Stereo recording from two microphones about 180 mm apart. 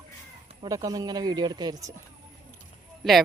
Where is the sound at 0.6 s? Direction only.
20° right (ahead or behind).